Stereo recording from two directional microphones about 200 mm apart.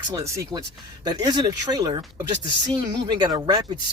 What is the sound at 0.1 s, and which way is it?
Speech, 15° right (ahead or behind).